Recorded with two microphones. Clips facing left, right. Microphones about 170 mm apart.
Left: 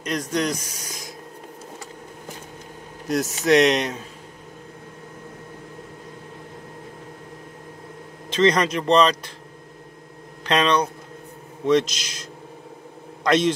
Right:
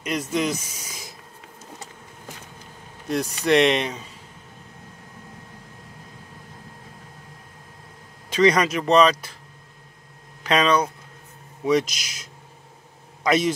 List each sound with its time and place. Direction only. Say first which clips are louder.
0.0 s speech: even; 5° right (ahead or behind)
3.4 s speech: left 1 dB; centre (ahead or behind)
8.3 s speech: even; 10° right (ahead or behind)
10.4 s a man's voice: even; 5° right (ahead or behind)